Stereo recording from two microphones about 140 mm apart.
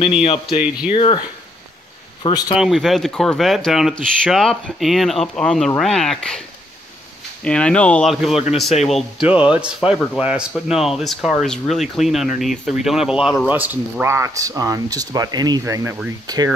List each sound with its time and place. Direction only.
0.0 s speech: 40° left (ahead or behind)
2.2 s speech: 30° left (ahead or behind)
2.5 s speech: centre (ahead or behind)
7.4 s speech: 10° left (ahead or behind)
8.1 s speech: centre (ahead or behind); by 16.4 s 30° right (ahead or behind)